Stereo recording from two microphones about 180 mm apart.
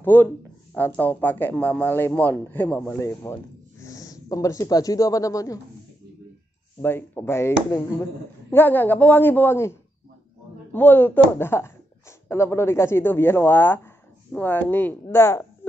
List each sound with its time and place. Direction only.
0.0 s speech: 10° left (ahead or behind)
6.8 s speech: 10° left (ahead or behind)